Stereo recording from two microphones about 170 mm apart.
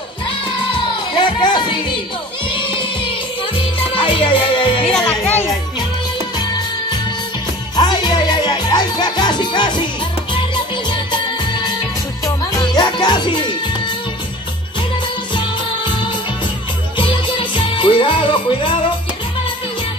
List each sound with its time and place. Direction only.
0.7 s music: 25° left (ahead or behind)
4.8 s music: 5° left (ahead or behind)
7.7 s music: 25° left (ahead or behind)
15.3 s music: 25° left (ahead or behind)